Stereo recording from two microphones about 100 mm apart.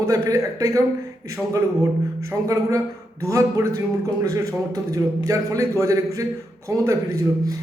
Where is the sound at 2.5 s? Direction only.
35° right (ahead or behind).